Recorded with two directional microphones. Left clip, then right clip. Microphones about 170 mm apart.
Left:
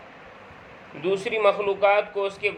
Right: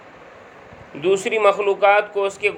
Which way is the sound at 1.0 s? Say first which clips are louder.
Right 5 dB; 35° right (ahead or behind).